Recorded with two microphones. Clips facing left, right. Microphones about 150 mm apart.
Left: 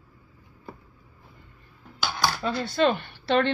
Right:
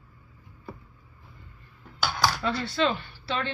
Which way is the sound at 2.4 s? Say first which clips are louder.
Left 3 dB; 45° left (ahead or behind).